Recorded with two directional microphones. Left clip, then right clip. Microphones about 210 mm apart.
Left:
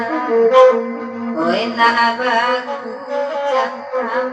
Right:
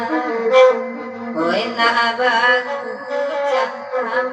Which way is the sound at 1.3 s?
35° right (ahead or behind).